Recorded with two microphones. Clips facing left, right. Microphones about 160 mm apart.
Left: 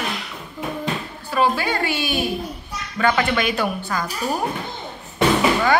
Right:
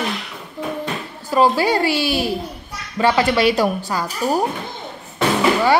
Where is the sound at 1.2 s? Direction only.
35° right (ahead or behind).